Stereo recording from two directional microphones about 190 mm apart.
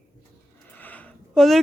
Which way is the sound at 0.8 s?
10° left (ahead or behind).